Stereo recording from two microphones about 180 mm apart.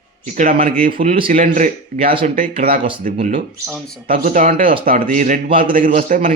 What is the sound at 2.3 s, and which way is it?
Speech, 50° right (ahead or behind).